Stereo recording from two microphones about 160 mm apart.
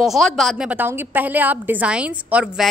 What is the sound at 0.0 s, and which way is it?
A woman's voice, centre (ahead or behind).